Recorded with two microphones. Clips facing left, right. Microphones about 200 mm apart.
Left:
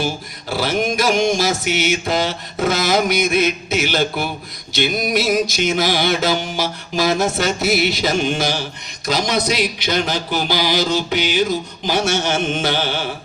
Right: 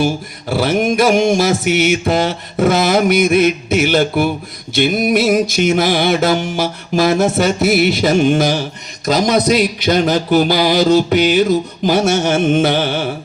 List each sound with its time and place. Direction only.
0.0 s music: 55° right (ahead or behind)